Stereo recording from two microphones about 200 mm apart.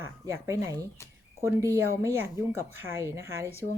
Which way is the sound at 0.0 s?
15° right (ahead or behind).